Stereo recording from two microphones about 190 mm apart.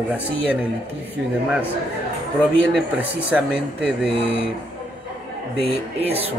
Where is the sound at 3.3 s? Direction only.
Centre (ahead or behind).